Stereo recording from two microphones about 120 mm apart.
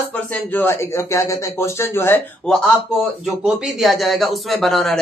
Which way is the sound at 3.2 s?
5° right (ahead or behind).